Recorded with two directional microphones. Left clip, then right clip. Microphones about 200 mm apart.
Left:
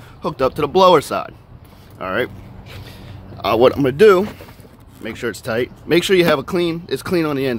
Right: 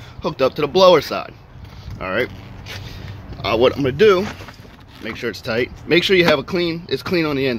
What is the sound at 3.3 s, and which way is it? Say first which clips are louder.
Speech: left 2 dB; 15° left (ahead or behind).